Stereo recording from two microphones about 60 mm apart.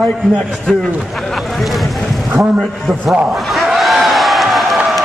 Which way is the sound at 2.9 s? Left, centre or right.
Centre.